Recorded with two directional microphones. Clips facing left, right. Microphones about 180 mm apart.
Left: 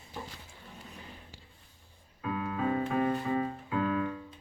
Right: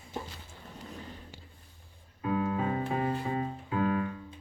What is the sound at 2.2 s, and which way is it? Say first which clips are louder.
Music: right 3 dB; 30° right (ahead or behind).